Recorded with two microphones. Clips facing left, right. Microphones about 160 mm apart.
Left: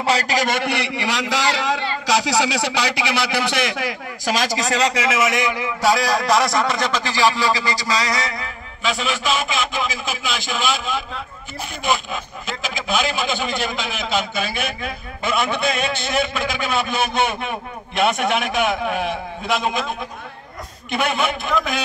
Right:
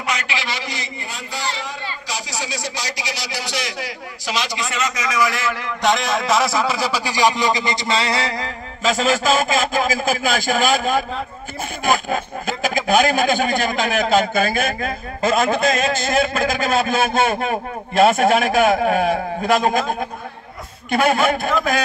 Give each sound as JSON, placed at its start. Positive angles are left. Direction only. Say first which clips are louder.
{"t": 0.0, "sound": "a man's voice", "louder": "left 6 dB", "side_deg": 35}
{"t": 4.6, "sound": "a man's voice", "louder": "left 4 dB", "side_deg": 35}
{"t": 5.8, "sound": "a man's voice", "louder": "left 1 dB", "side_deg": 0}